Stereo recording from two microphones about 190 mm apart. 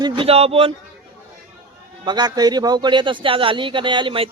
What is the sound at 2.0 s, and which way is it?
Speech, 20° right (ahead or behind).